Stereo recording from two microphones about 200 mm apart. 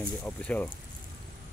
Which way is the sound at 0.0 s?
5° left (ahead or behind).